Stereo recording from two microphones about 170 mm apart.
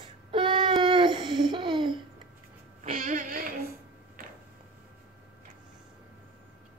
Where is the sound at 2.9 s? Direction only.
50° right (ahead or behind).